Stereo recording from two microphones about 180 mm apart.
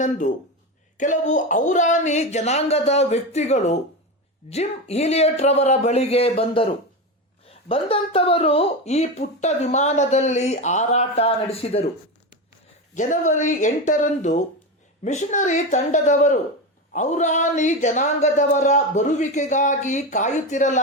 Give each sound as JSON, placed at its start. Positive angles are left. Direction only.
{"t": 0.9, "sound": "speech", "side_deg": 45}
{"t": 12.9, "sound": "speech", "side_deg": 45}